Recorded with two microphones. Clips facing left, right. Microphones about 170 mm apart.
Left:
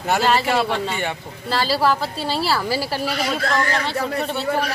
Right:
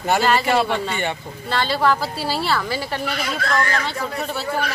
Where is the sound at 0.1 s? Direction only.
Centre (ahead or behind).